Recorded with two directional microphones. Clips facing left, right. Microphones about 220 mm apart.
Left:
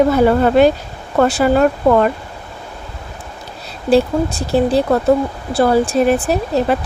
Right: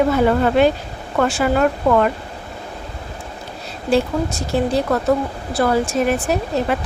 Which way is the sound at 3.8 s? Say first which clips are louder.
Left 4 dB; 35° left (ahead or behind).